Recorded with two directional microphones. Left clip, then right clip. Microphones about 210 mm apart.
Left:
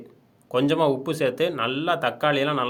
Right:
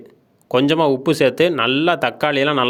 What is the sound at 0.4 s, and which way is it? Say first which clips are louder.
Speech: right 6 dB; 40° right (ahead or behind).